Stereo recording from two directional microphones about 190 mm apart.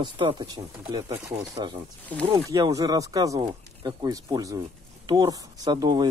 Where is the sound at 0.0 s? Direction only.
25° right (ahead or behind).